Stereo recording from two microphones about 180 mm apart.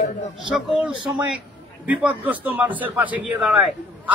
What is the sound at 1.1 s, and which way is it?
A man's voice, 10° right (ahead or behind).